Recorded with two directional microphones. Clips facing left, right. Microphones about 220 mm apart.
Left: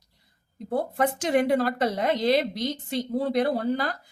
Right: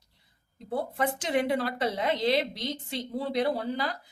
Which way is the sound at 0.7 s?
45° left (ahead or behind).